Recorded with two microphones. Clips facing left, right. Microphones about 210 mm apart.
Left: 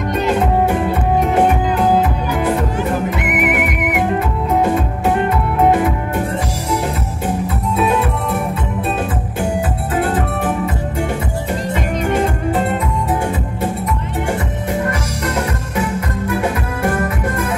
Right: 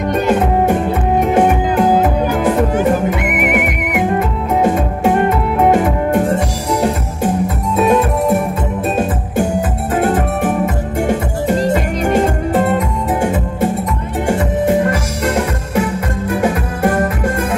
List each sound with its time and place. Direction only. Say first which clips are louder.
3.1 s music: right 2 dB; 55° right (ahead or behind)